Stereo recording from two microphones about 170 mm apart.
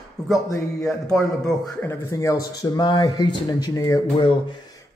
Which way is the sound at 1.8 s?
15° left (ahead or behind).